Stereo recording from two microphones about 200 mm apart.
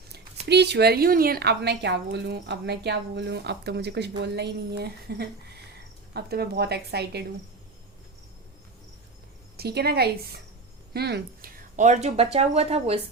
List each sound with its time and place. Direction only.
0.4 s a woman's voice: 55° right (ahead or behind)
9.6 s speech: 55° right (ahead or behind)
11.8 s speech: 35° right (ahead or behind)